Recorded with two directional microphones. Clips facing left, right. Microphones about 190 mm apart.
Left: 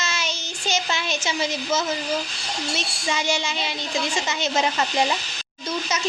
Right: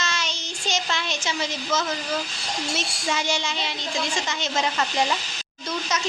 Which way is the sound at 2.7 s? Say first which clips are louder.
Even; centre (ahead or behind).